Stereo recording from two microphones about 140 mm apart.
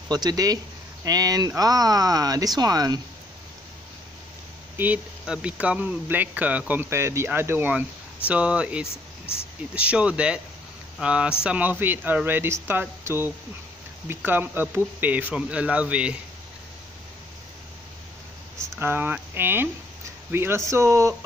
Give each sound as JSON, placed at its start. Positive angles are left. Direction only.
{"t": 0.1, "sound": "speech", "side_deg": -30}
{"t": 4.7, "sound": "speech", "side_deg": -10}
{"t": 18.8, "sound": "speech", "side_deg": -15}